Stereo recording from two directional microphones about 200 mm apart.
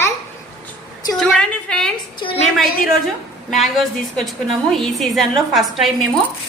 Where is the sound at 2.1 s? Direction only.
25° left (ahead or behind).